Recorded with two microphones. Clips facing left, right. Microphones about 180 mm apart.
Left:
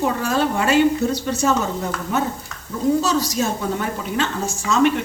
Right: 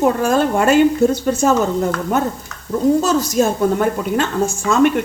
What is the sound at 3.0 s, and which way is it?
A woman's voice, 50° right (ahead or behind).